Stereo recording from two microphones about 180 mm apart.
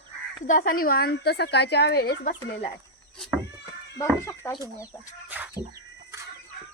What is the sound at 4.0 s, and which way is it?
Speech, 15° left (ahead or behind).